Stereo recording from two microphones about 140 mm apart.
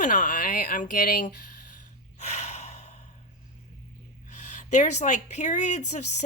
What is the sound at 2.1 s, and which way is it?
Gasp, 55° left (ahead or behind).